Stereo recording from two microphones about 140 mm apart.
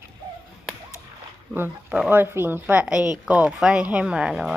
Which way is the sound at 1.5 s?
15° right (ahead or behind).